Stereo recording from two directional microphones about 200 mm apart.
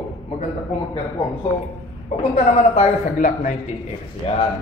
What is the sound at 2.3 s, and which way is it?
A man's voice, 35° left (ahead or behind).